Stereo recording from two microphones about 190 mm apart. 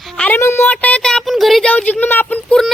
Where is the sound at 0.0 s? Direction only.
5° left (ahead or behind).